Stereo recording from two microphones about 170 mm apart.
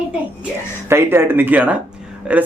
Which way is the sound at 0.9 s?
15° right (ahead or behind).